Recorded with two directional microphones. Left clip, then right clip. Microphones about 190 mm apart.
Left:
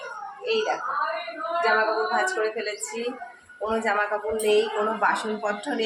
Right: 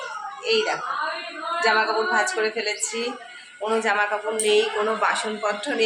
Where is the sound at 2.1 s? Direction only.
10° right (ahead or behind).